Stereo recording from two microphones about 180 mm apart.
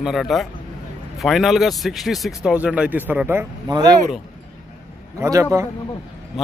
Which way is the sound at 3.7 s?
25° right (ahead or behind).